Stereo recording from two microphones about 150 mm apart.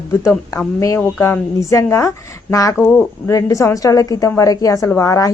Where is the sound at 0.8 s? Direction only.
20° left (ahead or behind).